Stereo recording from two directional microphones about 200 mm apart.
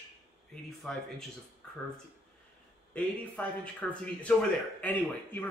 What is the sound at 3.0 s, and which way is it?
A man's voice, 5° left (ahead or behind).